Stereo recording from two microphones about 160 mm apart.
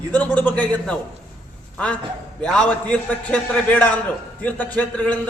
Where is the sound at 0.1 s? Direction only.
10° left (ahead or behind).